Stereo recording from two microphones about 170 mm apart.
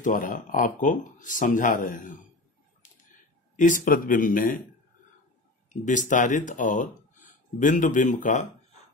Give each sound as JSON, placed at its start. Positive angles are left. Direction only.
{"t": 0.0, "sound": "speech", "side_deg": 50}
{"t": 3.5, "sound": "speech", "side_deg": 50}
{"t": 5.7, "sound": "speech", "side_deg": 45}